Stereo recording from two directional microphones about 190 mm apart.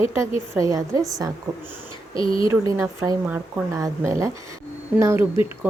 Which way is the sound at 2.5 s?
15° right (ahead or behind).